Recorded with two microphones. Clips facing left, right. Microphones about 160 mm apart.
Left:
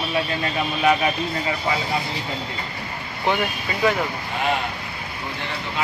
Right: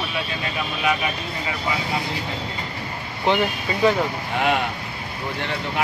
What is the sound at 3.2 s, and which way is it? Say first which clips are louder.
Speech: right 2 dB; 20° right (ahead or behind).